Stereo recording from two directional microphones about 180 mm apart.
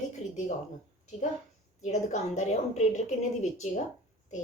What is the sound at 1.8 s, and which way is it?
A woman's voice, 40° left (ahead or behind).